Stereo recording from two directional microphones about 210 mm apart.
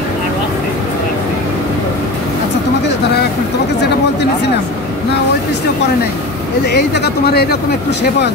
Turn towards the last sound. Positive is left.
turn(degrees=50)  # may be behind; listen again after turning